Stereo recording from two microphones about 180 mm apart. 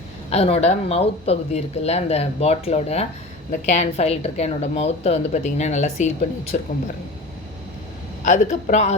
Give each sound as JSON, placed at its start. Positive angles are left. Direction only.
{"t": 0.3, "sound": "a woman's voice", "side_deg": 35}
{"t": 8.2, "sound": "a man's voice", "side_deg": 45}